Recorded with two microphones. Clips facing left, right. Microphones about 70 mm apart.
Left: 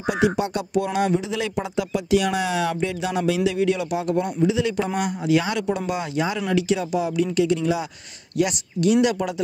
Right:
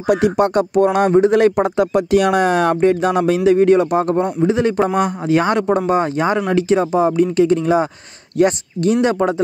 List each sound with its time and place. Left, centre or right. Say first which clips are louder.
0.0 s speech: right 7 dB; right